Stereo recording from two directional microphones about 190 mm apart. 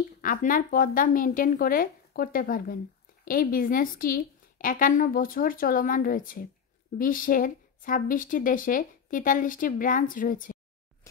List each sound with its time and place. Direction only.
0.2 s speech: 45° left (ahead or behind)